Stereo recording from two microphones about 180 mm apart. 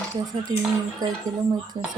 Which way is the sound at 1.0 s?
20° right (ahead or behind).